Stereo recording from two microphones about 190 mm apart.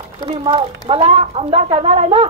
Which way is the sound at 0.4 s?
30° right (ahead or behind).